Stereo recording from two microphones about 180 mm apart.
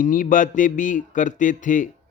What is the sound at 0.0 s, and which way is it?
Speech, 50° left (ahead or behind).